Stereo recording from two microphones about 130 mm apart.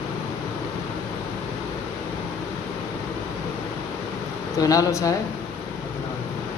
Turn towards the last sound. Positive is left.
turn(degrees=25)  # may be behind; listen again after turning